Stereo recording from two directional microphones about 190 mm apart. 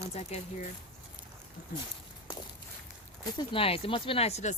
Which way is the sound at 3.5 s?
30° left (ahead or behind).